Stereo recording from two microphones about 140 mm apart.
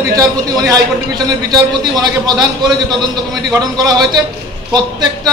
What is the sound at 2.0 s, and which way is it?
A man's voice, 30° right (ahead or behind).